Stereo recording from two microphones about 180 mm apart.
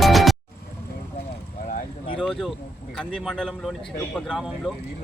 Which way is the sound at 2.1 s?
5° left (ahead or behind).